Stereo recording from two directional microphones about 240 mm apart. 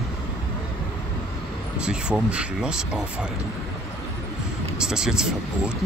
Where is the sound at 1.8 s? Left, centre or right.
Centre.